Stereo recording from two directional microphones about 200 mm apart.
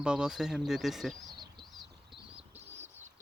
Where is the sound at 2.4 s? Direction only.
35° right (ahead or behind).